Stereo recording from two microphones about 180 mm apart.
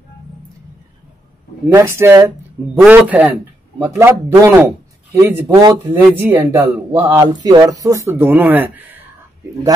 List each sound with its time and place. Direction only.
1.7 s speech: 15° right (ahead or behind)
5.9 s speech: 10° right (ahead or behind)